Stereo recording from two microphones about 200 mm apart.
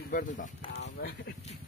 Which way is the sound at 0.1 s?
40° left (ahead or behind).